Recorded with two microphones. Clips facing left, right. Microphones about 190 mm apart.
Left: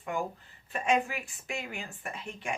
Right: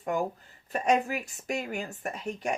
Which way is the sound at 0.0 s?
40° right (ahead or behind).